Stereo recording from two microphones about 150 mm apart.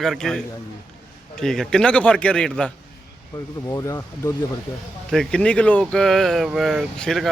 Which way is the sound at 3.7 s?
20° left (ahead or behind).